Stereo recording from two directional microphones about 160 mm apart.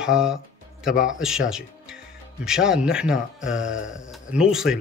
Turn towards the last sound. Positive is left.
turn(degrees=-5)  # may be behind; listen again after turning